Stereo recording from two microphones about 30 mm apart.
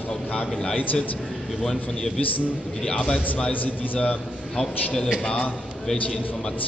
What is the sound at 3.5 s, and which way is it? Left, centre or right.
Speech, left.